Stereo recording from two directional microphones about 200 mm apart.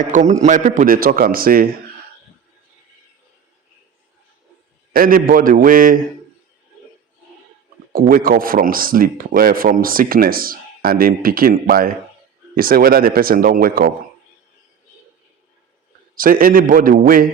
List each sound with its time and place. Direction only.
0.0 s a man's voice: 40° right (ahead or behind)
4.9 s a man's voice: 45° right (ahead or behind)
7.9 s a man's voice: 45° right (ahead or behind)
16.1 s a man's voice: 45° right (ahead or behind)